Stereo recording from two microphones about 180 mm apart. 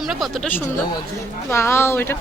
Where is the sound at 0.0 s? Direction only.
Centre (ahead or behind).